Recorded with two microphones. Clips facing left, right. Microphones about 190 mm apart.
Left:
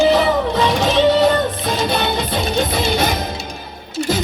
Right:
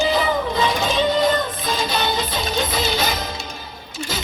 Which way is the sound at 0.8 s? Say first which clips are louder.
Left 7 dB; 70° left (ahead or behind).